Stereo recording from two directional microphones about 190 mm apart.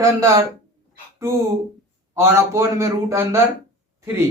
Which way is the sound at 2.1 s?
15° right (ahead or behind).